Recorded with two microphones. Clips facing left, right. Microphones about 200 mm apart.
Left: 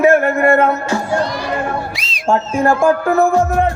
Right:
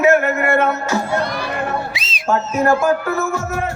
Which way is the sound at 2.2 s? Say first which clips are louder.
Left 2 dB; 30° left (ahead or behind).